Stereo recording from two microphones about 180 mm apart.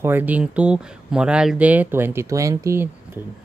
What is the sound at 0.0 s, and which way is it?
Speech, 10° right (ahead or behind).